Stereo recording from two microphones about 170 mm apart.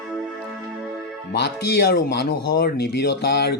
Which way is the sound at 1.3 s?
75° left (ahead or behind).